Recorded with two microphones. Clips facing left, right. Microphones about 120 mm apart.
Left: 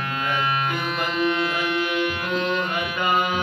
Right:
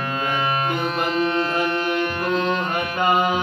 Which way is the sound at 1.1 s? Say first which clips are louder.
Right 1 dB; 35° right (ahead or behind).